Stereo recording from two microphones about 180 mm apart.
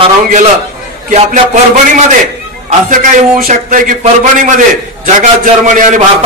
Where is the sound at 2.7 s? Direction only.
45° right (ahead or behind).